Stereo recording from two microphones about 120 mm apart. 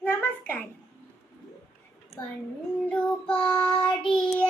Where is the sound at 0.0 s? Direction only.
15° left (ahead or behind).